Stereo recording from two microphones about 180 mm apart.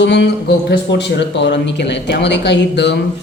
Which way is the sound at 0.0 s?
75° left (ahead or behind).